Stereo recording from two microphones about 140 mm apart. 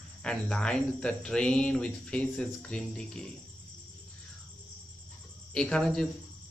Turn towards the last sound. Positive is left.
turn(degrees=5)  # may be behind; listen again after turning